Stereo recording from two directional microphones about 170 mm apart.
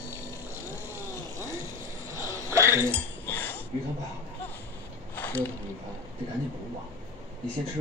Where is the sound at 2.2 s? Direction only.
15° right (ahead or behind).